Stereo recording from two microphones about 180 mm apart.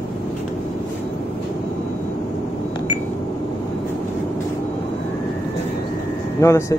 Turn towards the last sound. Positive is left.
turn(degrees=15)  # may be behind; listen again after turning